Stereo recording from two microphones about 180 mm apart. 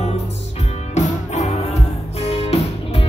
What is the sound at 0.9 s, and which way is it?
Music, 40° left (ahead or behind).